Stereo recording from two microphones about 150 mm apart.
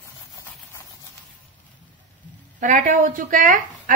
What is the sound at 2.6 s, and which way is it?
A woman's voice, 60° right (ahead or behind).